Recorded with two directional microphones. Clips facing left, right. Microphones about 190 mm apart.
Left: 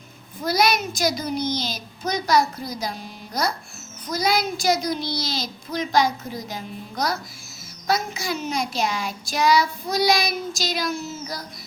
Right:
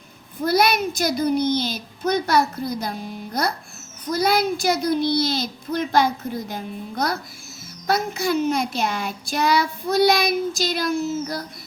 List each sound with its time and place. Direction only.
0.4 s child singing: 55° right (ahead or behind)